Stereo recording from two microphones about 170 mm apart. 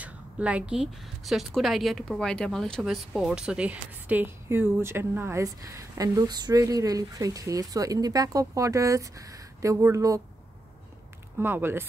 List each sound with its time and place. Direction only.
0.0 s a woman's voice: 10° right (ahead or behind)
11.3 s a woman's voice: 15° right (ahead or behind)